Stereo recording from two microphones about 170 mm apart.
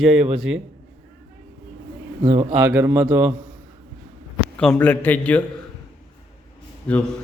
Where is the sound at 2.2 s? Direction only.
45° right (ahead or behind).